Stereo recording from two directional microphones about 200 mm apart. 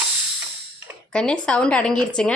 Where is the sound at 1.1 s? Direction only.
5° left (ahead or behind).